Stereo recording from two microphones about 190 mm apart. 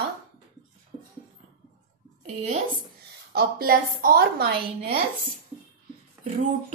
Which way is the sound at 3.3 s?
55° right (ahead or behind).